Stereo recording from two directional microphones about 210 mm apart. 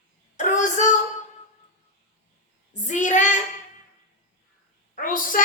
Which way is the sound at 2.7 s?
35° left (ahead or behind).